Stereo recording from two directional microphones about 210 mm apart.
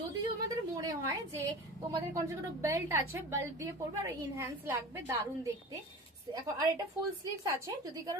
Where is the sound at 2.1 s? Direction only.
15° right (ahead or behind).